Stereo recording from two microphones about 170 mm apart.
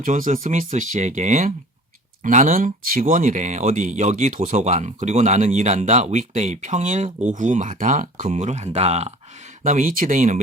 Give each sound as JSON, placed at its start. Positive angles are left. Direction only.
{"t": 0.0, "sound": "speech", "side_deg": -50}